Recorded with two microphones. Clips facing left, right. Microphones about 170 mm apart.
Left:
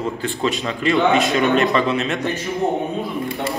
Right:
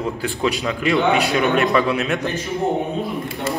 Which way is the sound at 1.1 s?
65° right (ahead or behind).